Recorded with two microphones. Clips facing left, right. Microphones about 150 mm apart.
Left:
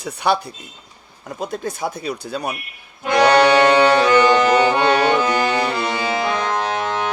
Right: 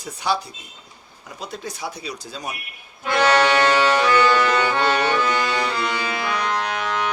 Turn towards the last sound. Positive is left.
turn(degrees=30)  # may be behind; listen again after turning